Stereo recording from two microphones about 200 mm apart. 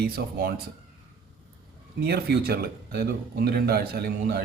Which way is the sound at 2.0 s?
50° right (ahead or behind).